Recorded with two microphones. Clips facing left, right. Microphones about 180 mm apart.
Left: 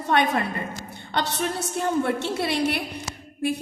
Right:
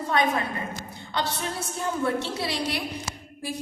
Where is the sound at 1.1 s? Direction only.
65° left (ahead or behind).